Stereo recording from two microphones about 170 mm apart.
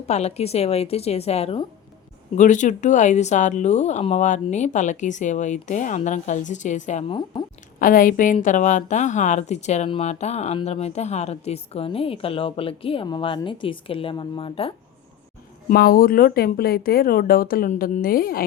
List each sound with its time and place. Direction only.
0.1 s a woman's voice: 40° left (ahead or behind)
2.3 s speech: 45° left (ahead or behind)
7.8 s a woman's voice: 55° left (ahead or behind); by 14.7 s 35° left (ahead or behind)
15.7 s speech: 60° left (ahead or behind)